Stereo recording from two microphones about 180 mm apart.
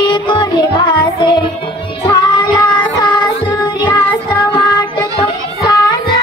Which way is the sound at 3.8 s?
25° left (ahead or behind).